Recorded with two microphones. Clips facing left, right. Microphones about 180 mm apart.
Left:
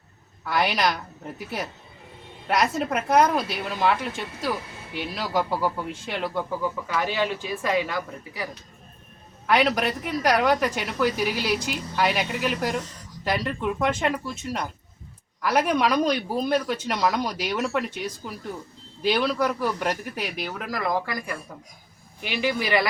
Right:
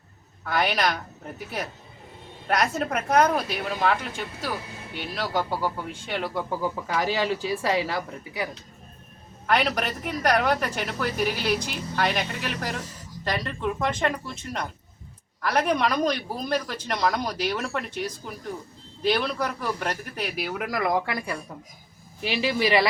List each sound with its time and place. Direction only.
0.5 s a woman's voice: centre (ahead or behind)
6.9 s a woman's voice: 35° right (ahead or behind)
9.5 s a woman's voice: 5° left (ahead or behind)
19.0 s a woman's voice: 5° left (ahead or behind)
20.7 s speech: 25° right (ahead or behind)